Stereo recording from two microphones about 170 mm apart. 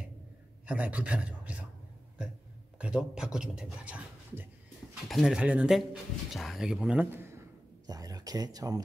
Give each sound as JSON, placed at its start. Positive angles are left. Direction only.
{"t": 0.7, "sound": "a man's voice", "side_deg": -10}
{"t": 2.8, "sound": "speech", "side_deg": -5}